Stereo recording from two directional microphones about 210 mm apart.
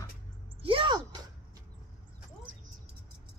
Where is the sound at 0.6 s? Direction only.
25° right (ahead or behind).